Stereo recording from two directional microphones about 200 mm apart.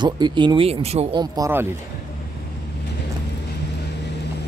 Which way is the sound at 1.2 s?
15° right (ahead or behind).